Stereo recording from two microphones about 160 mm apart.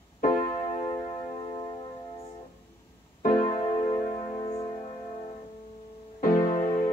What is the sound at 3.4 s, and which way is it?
Music, 40° left (ahead or behind).